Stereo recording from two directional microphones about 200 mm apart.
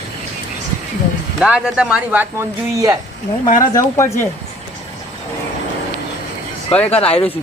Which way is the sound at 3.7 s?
15° left (ahead or behind).